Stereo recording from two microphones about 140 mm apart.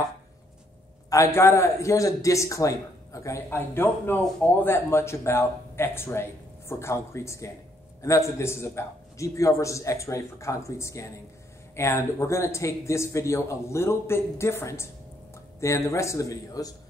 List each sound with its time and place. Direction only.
1.1 s a man's voice: 20° left (ahead or behind)